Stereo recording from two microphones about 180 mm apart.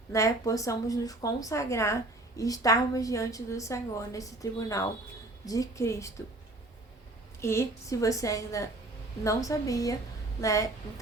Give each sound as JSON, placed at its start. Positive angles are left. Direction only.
{"t": 0.1, "sound": "a woman's voice", "side_deg": 15}
{"t": 7.4, "sound": "a woman's voice", "side_deg": 15}